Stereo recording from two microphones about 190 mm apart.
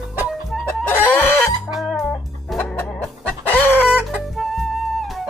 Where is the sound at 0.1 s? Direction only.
5° right (ahead or behind).